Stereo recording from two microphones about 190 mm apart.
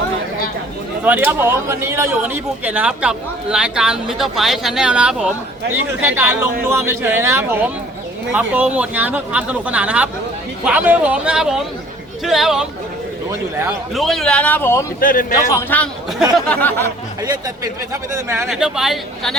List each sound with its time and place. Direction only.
1.0 s speech: 10° right (ahead or behind); by 14.8 s 15° left (ahead or behind)
15.0 s a man's voice: 45° left (ahead or behind)
15.4 s speech: 10° left (ahead or behind)
17.2 s speech: 20° right (ahead or behind)
18.4 s speech: centre (ahead or behind)